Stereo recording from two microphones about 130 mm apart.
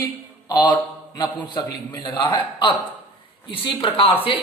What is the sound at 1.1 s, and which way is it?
A man's voice, 30° left (ahead or behind).